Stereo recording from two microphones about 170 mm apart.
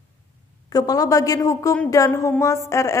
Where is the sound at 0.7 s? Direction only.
20° left (ahead or behind).